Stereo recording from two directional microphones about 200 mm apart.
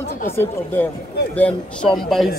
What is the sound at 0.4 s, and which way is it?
Speech, 10° left (ahead or behind).